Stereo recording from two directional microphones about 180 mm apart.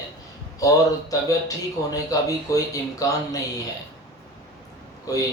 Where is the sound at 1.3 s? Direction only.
20° left (ahead or behind).